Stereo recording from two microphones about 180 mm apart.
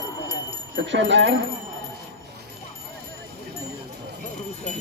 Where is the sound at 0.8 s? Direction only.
80° right.